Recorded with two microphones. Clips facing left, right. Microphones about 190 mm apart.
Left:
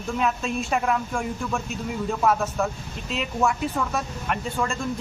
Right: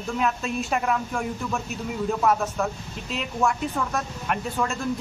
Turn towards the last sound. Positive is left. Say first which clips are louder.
# even
turn(degrees=0)  # may be behind; listen again after turning